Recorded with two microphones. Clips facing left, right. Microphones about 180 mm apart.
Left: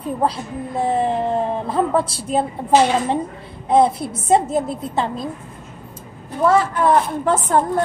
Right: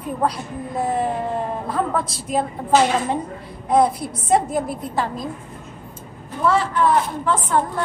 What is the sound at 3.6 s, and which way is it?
A woman's voice, 25° left (ahead or behind).